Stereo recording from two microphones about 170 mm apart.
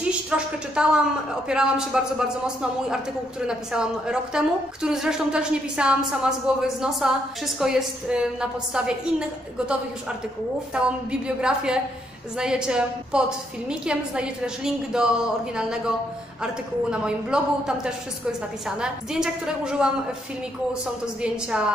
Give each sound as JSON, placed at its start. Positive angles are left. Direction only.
{"t": 0.3, "sound": "a man's voice", "side_deg": -5}
{"t": 10.7, "sound": "a man's voice", "side_deg": -5}
{"t": 16.9, "sound": "a man's voice", "side_deg": -5}
{"t": 21.2, "sound": "a man's voice", "side_deg": -5}